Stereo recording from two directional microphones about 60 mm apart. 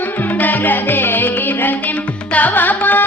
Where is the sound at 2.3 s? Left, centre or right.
Left.